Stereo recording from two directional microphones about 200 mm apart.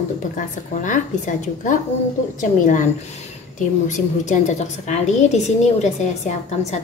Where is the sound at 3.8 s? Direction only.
40° left (ahead or behind).